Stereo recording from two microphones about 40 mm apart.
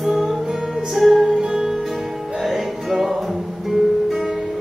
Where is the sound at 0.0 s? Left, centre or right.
Centre.